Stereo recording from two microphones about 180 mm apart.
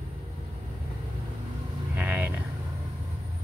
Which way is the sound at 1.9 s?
10° right (ahead or behind).